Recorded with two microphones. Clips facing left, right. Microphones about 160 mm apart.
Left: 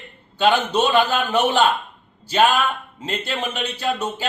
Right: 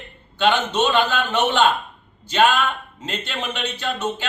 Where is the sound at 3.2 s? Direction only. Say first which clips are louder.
Left 2 dB; 40° left (ahead or behind).